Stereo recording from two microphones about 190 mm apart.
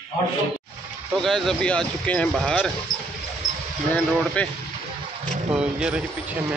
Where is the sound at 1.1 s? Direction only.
Centre (ahead or behind).